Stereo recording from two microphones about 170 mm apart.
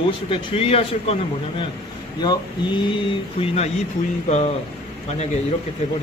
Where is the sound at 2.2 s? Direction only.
30° left (ahead or behind).